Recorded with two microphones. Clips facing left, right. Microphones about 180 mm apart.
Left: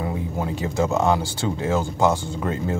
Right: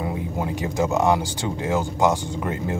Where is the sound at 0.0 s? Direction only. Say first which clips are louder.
Even; 15° right (ahead or behind).